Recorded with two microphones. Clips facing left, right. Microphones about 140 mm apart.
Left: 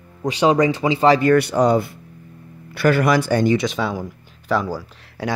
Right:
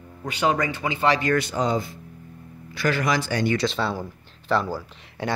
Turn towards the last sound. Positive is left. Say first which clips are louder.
# left 2 dB
turn(degrees=10)  # may be behind; listen again after turning